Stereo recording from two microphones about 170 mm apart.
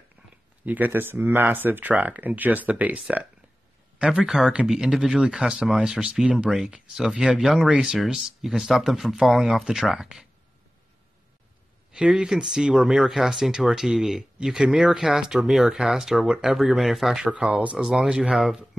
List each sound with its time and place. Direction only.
0.7 s speech: 10° right (ahead or behind)
11.9 s speech: 5° right (ahead or behind)